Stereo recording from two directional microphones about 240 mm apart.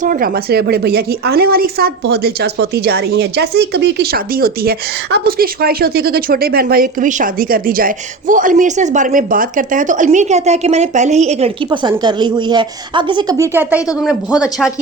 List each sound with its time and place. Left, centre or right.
0.0 s a woman's voice: right; by 14.7 s centre